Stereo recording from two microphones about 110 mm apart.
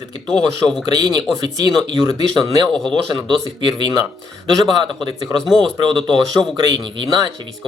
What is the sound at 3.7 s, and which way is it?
Speech, 45° right (ahead or behind).